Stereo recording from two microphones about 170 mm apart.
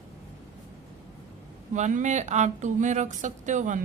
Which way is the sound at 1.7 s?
45° right (ahead or behind).